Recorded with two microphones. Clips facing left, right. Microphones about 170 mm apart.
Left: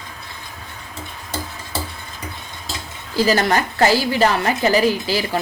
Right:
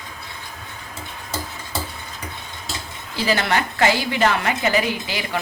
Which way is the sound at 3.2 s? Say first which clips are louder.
Left 4 dB; 40° left (ahead or behind).